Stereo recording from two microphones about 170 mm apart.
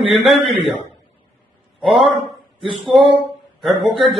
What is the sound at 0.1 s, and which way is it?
Speech, centre (ahead or behind).